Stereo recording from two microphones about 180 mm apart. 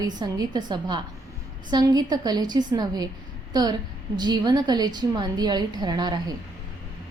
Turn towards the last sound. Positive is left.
turn(degrees=-20)  # may be behind; listen again after turning